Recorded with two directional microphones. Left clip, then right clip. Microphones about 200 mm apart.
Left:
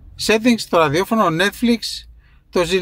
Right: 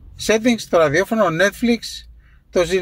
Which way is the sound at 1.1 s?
15° left (ahead or behind).